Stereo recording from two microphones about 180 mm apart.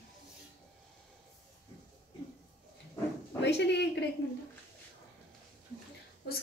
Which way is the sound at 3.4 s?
70° left (ahead or behind).